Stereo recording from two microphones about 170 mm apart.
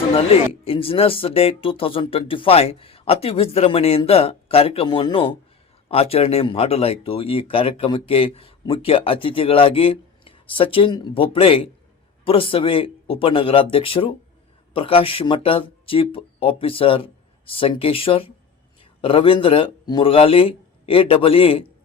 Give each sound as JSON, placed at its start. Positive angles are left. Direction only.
{"t": 0.1, "sound": "a man's voice", "side_deg": 35}